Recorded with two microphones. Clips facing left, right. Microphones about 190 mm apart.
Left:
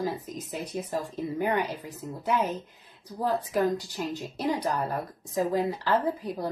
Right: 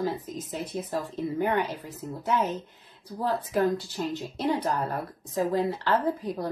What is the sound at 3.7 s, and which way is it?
Speech, 15° left (ahead or behind).